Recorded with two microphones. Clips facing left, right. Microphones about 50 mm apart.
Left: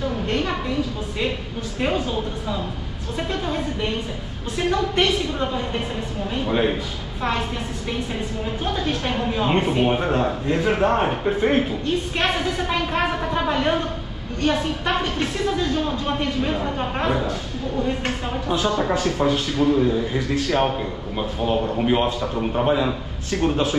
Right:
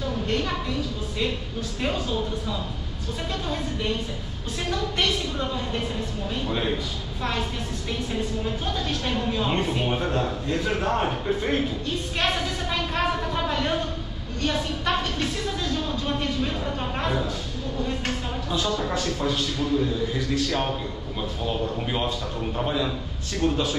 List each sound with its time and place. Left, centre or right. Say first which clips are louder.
0.3 s a sound: left 2 dB; left
1.8 s speech: left 4 dB; left
8.6 s speech: left 4 dB; left